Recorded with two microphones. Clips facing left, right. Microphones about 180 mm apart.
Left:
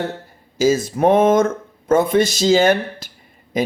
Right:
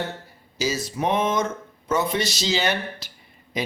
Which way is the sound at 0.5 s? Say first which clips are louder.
Left 10 dB; 50° left (ahead or behind).